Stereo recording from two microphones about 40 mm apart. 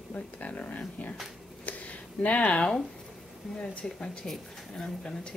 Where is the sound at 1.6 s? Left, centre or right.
Left.